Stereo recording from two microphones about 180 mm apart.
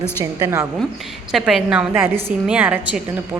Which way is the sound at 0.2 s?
20° right (ahead or behind).